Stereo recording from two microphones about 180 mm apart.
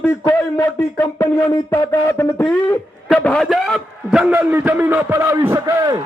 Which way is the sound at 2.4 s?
Centre (ahead or behind).